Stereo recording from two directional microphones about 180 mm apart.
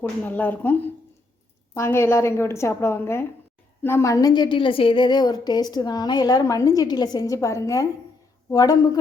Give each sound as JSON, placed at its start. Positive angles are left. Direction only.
{"t": 0.3, "sound": "a woman's voice", "side_deg": 10}